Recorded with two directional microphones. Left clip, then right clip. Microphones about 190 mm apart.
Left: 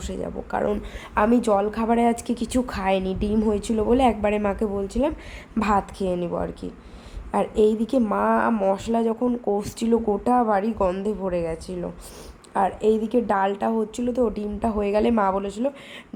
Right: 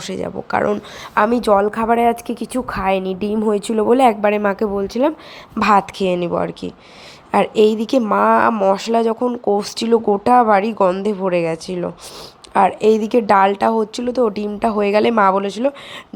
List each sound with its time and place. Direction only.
0.0 s a woman's voice: 15° right (ahead or behind)
1.5 s speech: 20° right (ahead or behind)
1.9 s a woman's voice: 10° right (ahead or behind)